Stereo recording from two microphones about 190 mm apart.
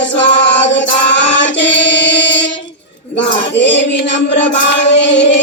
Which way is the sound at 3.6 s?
70° left (ahead or behind).